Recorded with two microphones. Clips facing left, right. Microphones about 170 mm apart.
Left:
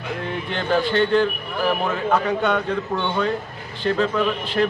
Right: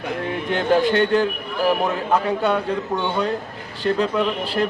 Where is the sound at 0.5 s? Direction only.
45° right (ahead or behind).